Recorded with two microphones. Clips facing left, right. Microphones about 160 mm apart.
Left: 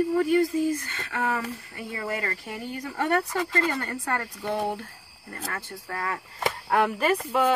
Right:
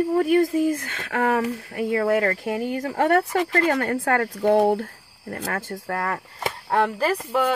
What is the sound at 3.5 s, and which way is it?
Speech, 75° right (ahead or behind).